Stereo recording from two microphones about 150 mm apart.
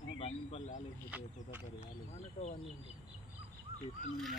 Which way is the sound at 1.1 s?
10° right (ahead or behind).